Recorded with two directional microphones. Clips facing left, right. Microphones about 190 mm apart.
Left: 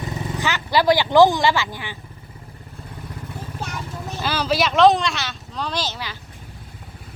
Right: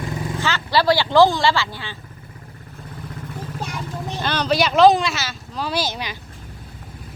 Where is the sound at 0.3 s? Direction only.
15° left (ahead or behind).